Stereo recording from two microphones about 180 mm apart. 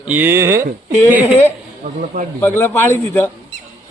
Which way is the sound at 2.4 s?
10° left (ahead or behind).